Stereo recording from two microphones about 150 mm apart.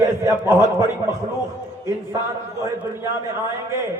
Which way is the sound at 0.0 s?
20° right (ahead or behind).